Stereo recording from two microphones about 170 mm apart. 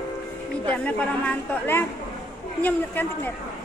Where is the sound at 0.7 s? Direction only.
10° left (ahead or behind).